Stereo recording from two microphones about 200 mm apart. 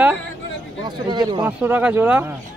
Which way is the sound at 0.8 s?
20° right (ahead or behind).